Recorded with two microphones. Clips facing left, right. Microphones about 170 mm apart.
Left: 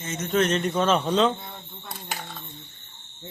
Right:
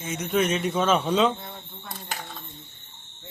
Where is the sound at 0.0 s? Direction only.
10° right (ahead or behind).